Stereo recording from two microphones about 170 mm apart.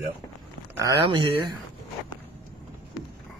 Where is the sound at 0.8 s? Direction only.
20° right (ahead or behind).